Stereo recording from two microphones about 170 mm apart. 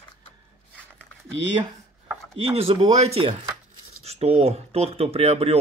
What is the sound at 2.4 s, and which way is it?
Speech, 35° right (ahead or behind).